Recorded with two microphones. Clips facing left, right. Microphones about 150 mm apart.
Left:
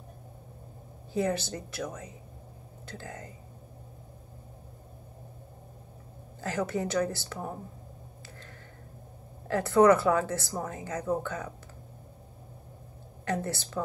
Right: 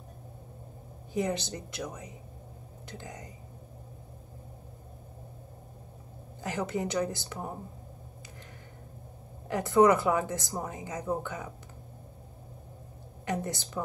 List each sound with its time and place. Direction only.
1.1 s a woman's voice: 20° right (ahead or behind)
6.4 s a woman's voice: 15° right (ahead or behind)
9.5 s a woman's voice: 15° right (ahead or behind)
13.2 s a woman's voice: 15° right (ahead or behind)